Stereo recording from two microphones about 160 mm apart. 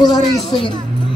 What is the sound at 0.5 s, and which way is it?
Speech, 30° left (ahead or behind).